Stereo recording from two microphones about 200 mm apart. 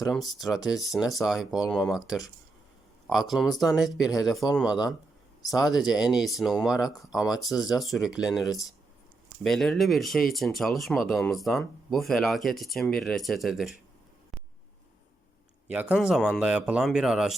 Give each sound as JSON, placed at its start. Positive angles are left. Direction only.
{"t": 0.0, "sound": "speech", "side_deg": 0}
{"t": 3.7, "sound": "speech", "side_deg": 20}
{"t": 3.9, "sound": "speech", "side_deg": -5}
{"t": 15.6, "sound": "speech", "side_deg": -5}